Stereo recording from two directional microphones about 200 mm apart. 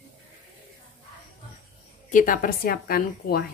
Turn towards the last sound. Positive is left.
turn(degrees=50)  # may be behind; listen again after turning